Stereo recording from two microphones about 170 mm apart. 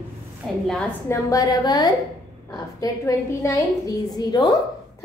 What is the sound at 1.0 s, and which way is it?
A woman's voice, 15° left (ahead or behind).